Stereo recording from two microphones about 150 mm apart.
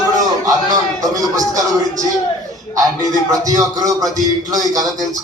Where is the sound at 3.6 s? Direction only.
25° right (ahead or behind).